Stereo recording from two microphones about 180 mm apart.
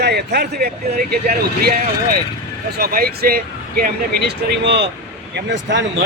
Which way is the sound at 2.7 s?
55° right (ahead or behind).